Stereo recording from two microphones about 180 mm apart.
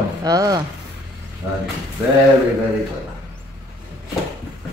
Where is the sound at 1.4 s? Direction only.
10° right (ahead or behind).